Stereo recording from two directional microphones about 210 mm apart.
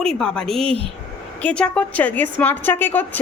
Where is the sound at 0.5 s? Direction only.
25° right (ahead or behind).